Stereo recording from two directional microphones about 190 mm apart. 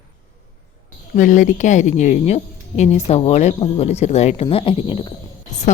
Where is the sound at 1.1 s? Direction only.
40° left (ahead or behind).